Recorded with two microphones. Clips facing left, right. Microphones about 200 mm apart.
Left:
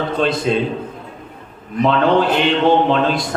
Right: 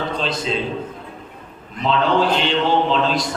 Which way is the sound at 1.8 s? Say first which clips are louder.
Left 4 dB; 55° left (ahead or behind).